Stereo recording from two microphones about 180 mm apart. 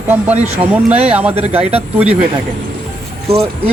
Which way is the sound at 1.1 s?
10° right (ahead or behind).